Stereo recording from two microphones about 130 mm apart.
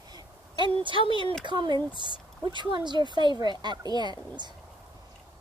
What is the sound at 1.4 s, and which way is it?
Speech, 35° right (ahead or behind).